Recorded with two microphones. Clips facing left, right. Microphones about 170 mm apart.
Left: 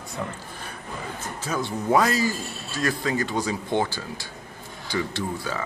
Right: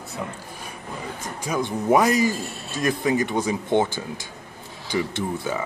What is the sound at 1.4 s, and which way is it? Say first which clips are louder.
A man's voice: right 3 dB; 15° right (ahead or behind).